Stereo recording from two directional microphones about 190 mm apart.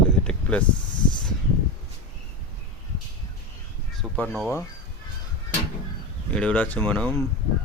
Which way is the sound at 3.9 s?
5° left (ahead or behind).